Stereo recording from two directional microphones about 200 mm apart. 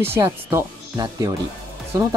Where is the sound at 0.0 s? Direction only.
15° right (ahead or behind).